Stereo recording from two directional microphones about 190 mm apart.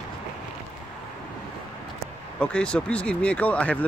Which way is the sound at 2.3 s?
5° left (ahead or behind).